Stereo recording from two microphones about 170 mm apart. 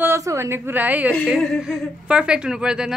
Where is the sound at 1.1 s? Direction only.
5° left (ahead or behind).